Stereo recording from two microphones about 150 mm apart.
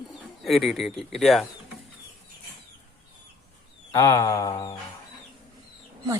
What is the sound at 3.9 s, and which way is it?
Mantra, 20° left (ahead or behind).